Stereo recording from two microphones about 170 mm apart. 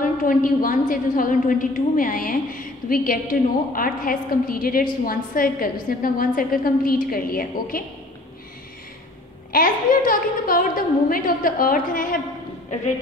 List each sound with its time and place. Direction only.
0.2 s a woman's voice: 55° left (ahead or behind)
9.5 s a woman's voice: 55° left (ahead or behind)